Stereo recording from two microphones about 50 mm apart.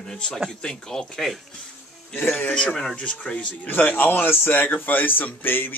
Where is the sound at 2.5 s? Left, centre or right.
Left.